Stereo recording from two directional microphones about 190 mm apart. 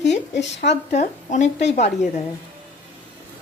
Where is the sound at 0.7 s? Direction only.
40° left (ahead or behind).